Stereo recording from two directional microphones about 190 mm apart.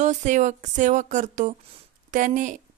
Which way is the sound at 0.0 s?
40° right (ahead or behind).